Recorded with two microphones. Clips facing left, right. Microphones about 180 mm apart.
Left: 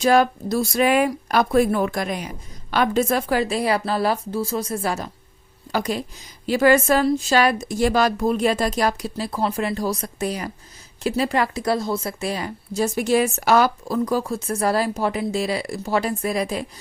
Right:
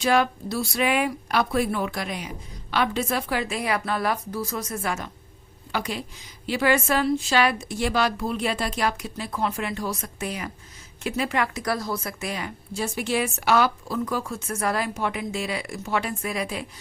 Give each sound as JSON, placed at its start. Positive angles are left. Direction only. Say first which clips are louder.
{"t": 0.0, "sound": "a woman's voice", "louder": "left 5 dB", "side_deg": 40}